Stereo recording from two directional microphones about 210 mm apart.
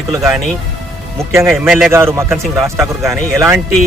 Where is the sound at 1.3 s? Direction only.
10° right (ahead or behind).